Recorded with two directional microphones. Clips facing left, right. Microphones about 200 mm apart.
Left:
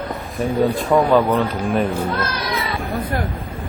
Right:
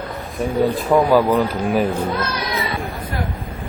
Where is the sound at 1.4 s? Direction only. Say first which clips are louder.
Right 1 dB; 10° right (ahead or behind).